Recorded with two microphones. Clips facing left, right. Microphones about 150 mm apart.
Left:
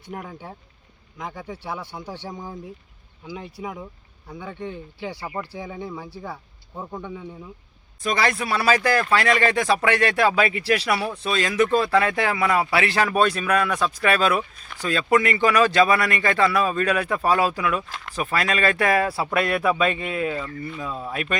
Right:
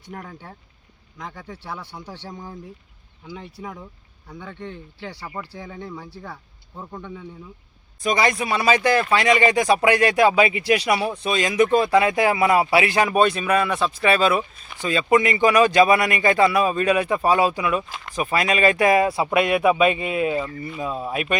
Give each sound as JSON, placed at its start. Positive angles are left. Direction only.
{"t": 0.1, "sound": "speech", "side_deg": 10}
{"t": 8.1, "sound": "speech", "side_deg": 0}
{"t": 10.8, "sound": "speech", "side_deg": -15}
{"t": 13.1, "sound": "speech", "side_deg": -10}